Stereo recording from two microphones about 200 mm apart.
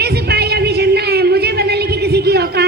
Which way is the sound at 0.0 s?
55° right (ahead or behind).